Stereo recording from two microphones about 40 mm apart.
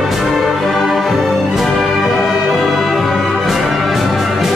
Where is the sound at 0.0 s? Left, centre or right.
Centre.